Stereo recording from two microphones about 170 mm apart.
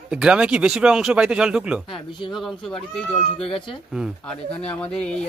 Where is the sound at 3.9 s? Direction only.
5° right (ahead or behind).